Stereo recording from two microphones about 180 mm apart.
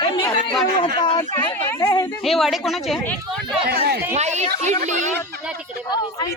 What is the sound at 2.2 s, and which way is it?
Speech, centre (ahead or behind).